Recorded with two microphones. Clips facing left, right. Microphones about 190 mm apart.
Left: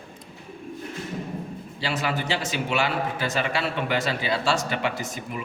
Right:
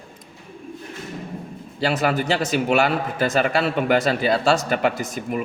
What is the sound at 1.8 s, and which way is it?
A man's voice, 45° right (ahead or behind).